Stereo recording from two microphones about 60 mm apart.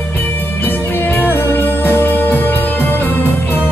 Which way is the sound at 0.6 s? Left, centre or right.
Left.